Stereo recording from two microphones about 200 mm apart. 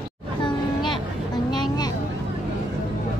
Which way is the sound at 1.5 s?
20° left (ahead or behind).